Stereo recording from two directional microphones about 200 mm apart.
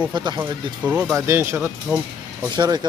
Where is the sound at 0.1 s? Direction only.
20° right (ahead or behind).